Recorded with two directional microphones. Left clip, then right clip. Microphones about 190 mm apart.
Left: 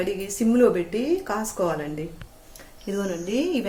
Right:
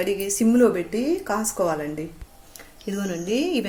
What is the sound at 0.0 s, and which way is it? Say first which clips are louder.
Speech: right 3 dB; 25° right (ahead or behind).